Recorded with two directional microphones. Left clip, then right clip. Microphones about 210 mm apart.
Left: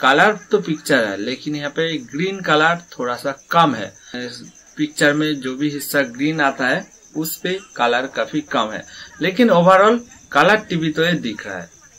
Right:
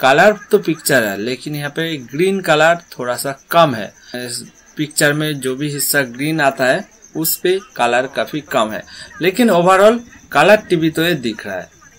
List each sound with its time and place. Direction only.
0.0 s speech: 45° right (ahead or behind)